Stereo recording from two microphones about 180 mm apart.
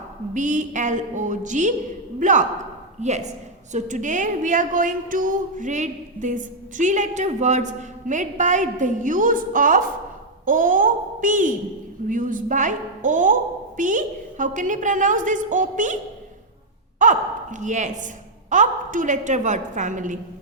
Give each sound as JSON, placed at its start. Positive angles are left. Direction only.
{"t": 0.3, "sound": "a woman's voice", "side_deg": -45}
{"t": 17.0, "sound": "a woman's voice", "side_deg": -45}